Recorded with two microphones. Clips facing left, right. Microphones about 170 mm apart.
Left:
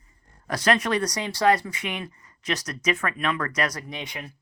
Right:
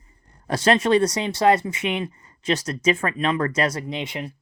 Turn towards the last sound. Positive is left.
turn(degrees=-25)  # may be behind; listen again after turning